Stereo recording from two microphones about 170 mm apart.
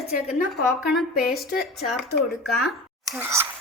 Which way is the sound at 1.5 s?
65° left (ahead or behind).